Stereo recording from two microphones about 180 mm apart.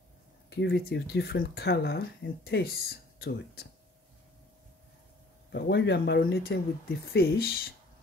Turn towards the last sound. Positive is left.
turn(degrees=60)  # may be behind; listen again after turning